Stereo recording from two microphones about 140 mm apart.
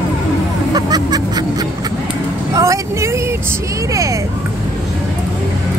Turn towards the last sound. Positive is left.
turn(degrees=-20)  # may be behind; listen again after turning